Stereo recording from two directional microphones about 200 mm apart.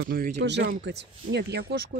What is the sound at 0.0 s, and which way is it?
Speech, 50° right (ahead or behind).